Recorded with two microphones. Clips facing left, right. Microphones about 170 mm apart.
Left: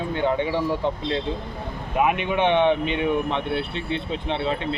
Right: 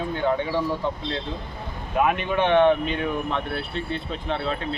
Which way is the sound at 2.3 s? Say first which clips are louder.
Right 3 dB; 20° left (ahead or behind).